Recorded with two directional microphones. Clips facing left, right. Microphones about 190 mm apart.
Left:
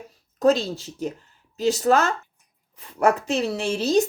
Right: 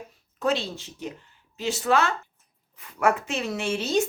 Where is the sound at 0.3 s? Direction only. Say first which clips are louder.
Left 7 dB; 40° left (ahead or behind).